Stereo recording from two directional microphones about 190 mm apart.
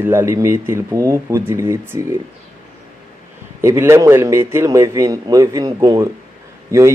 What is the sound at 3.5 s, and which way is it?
A man's voice, 15° right (ahead or behind).